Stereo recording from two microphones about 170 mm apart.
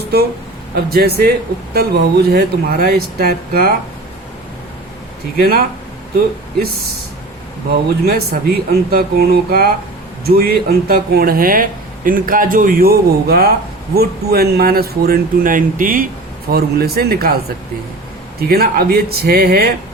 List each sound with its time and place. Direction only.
0.9 s speech: 65° right (ahead or behind)
5.4 s speech: 60° right (ahead or behind)
8.0 s speech: 65° right (ahead or behind)
16.5 s speech: 65° right (ahead or behind)